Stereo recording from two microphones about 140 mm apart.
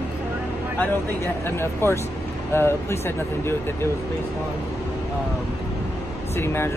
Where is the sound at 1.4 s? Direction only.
15° left (ahead or behind).